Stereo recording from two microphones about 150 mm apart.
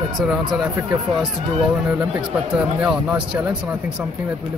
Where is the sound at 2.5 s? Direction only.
5° right (ahead or behind).